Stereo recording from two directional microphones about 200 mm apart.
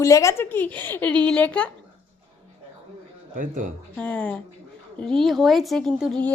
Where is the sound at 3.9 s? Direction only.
5° left (ahead or behind).